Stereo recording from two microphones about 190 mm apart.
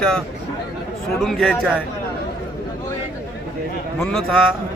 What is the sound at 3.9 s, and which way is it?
Speech, 5° left (ahead or behind).